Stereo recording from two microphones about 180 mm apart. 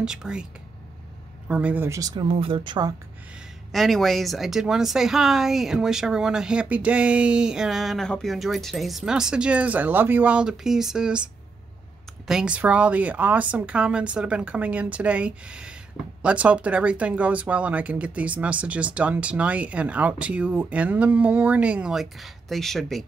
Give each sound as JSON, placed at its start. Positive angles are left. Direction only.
{"t": 0.0, "sound": "speech", "side_deg": -5}
{"t": 1.5, "sound": "a woman's voice", "side_deg": -10}
{"t": 3.7, "sound": "speech", "side_deg": 0}
{"t": 12.3, "sound": "speech", "side_deg": -5}